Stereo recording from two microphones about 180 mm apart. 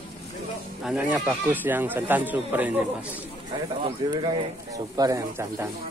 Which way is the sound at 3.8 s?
30° right (ahead or behind).